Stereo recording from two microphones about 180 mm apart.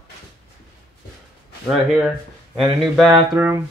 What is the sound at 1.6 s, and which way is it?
Speech, 5° right (ahead or behind).